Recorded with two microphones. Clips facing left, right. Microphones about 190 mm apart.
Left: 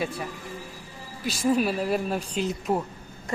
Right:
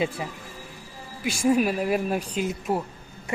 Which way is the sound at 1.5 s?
10° right (ahead or behind).